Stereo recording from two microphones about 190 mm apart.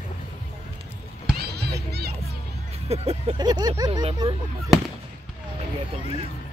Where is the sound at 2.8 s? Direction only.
35° right (ahead or behind).